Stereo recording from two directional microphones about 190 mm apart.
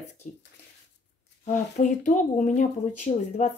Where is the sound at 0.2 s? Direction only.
40° left (ahead or behind).